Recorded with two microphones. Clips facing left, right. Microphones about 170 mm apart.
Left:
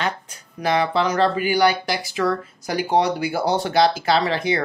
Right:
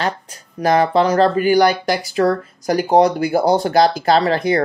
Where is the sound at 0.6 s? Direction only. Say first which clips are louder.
Right 6 dB; 40° right (ahead or behind).